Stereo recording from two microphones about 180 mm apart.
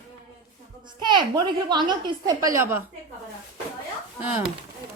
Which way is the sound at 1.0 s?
25° right (ahead or behind).